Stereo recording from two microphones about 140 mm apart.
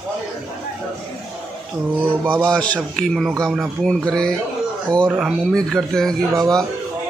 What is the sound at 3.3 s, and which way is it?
Speech, 20° right (ahead or behind).